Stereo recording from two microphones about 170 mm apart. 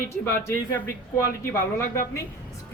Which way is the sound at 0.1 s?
15° left (ahead or behind).